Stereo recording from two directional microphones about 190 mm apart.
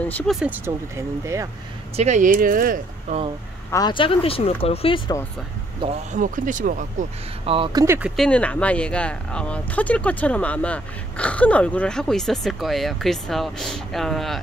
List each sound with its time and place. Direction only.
0.0 s speech: 5° left (ahead or behind)
0.4 s speech: 10° right (ahead or behind)
2.0 s speech: 40° right (ahead or behind)
3.7 s speech: 25° left (ahead or behind)
5.8 s speech: 25° right (ahead or behind)
6.1 s speech: 45° right (ahead or behind)
7.4 s speech: 30° right (ahead or behind)
7.8 s speech: 15° right (ahead or behind)
8.2 s speech: 5° left (ahead or behind)